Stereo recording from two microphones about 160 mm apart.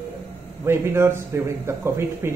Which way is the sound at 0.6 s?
15° right (ahead or behind).